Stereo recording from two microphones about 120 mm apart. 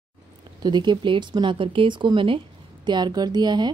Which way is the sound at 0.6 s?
35° right (ahead or behind).